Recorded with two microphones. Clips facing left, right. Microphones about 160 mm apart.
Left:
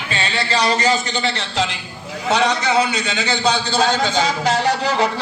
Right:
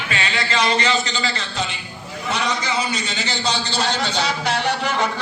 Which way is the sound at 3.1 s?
55° left (ahead or behind).